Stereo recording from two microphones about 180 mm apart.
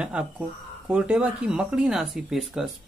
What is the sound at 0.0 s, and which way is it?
Speech, 5° right (ahead or behind).